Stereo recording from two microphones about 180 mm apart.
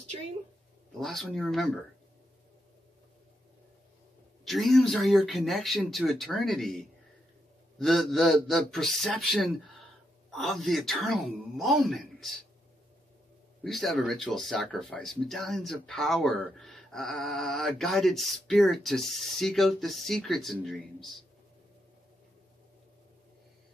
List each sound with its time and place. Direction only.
1.0 s speech: centre (ahead or behind)
4.5 s speech: centre (ahead or behind)
7.8 s speech: centre (ahead or behind)
13.7 s speech: centre (ahead or behind)